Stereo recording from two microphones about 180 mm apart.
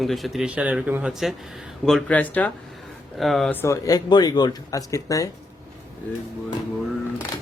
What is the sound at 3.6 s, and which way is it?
Speech, 15° left (ahead or behind).